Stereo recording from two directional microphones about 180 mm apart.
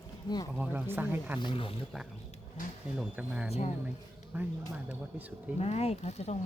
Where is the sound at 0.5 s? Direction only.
10° right (ahead or behind).